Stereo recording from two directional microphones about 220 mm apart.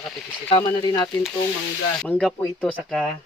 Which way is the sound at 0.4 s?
20° left (ahead or behind).